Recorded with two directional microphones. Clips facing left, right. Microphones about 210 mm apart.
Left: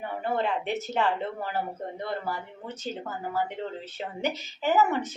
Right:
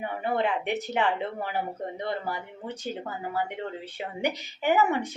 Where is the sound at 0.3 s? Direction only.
15° right (ahead or behind).